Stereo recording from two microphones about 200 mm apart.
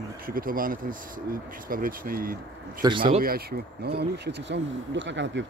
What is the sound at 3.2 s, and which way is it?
Speech, 50° right (ahead or behind).